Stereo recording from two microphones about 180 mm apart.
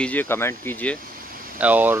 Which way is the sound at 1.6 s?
10° right (ahead or behind).